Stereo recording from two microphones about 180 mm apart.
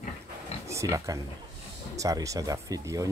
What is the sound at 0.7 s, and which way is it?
Speech, 15° right (ahead or behind).